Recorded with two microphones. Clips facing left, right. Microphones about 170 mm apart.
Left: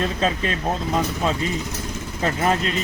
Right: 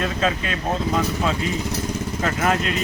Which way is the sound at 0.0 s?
30° left (ahead or behind).